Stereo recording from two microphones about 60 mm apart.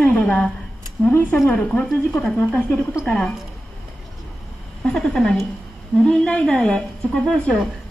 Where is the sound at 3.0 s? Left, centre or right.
Centre.